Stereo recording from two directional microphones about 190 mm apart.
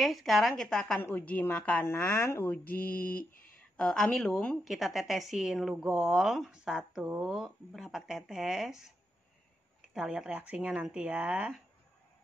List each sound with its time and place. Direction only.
0.0 s a woman's voice: centre (ahead or behind)
3.2 s speech: 50° left (ahead or behind)
3.7 s a woman's voice: 5° left (ahead or behind)
9.9 s a woman's voice: 5° right (ahead or behind)